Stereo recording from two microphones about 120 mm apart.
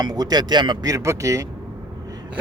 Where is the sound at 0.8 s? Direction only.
25° right (ahead or behind).